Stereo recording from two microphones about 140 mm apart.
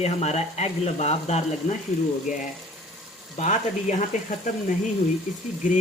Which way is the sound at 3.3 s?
60° left (ahead or behind).